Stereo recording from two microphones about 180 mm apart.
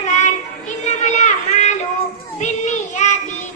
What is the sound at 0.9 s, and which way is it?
Children playing, 40° left (ahead or behind).